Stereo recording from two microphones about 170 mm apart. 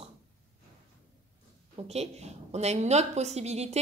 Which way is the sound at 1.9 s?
40° right (ahead or behind).